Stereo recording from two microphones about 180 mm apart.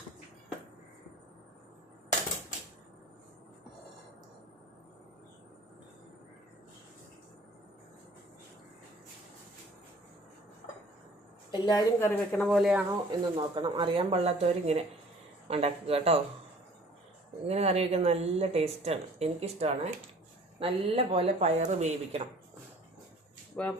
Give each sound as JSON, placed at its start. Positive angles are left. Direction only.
{"t": 11.5, "sound": "a woman's voice", "side_deg": 25}
{"t": 12.4, "sound": "speech", "side_deg": 0}
{"t": 13.1, "sound": "speech", "side_deg": -25}
{"t": 17.4, "sound": "speech", "side_deg": -35}
{"t": 21.3, "sound": "speech", "side_deg": -45}
{"t": 23.6, "sound": "speech", "side_deg": 0}